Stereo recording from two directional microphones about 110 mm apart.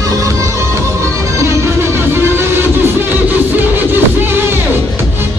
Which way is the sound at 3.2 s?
20° right (ahead or behind).